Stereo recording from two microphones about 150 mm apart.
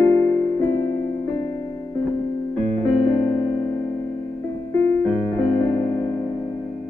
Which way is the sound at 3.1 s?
35° left (ahead or behind).